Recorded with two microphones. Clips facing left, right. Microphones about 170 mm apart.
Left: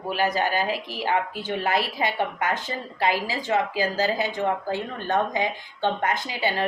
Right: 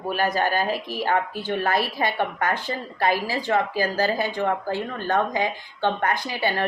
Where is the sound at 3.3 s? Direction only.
20° left (ahead or behind).